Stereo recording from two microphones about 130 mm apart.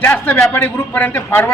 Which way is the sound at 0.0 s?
15° left (ahead or behind).